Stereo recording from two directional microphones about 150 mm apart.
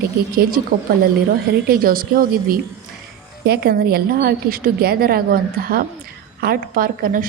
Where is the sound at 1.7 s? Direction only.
75° right (ahead or behind).